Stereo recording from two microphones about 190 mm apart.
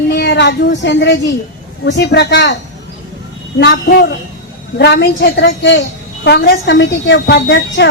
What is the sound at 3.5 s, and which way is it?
A woman's voice, 65° left (ahead or behind).